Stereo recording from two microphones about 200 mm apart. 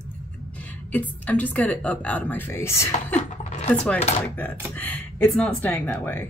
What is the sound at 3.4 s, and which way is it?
Dishes, 35° left (ahead or behind).